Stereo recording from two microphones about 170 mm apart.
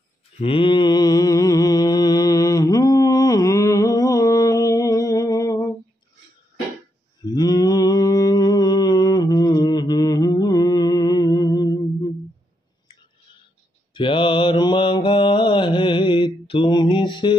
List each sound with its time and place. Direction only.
0.4 s mantra: 30° left (ahead or behind)
7.2 s mantra: 25° left (ahead or behind)
13.9 s mantra: 30° left (ahead or behind)